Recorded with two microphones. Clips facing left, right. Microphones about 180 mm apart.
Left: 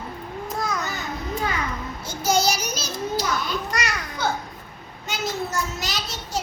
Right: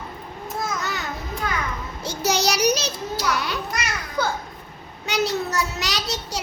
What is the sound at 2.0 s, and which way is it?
Child singing, 70° right (ahead or behind).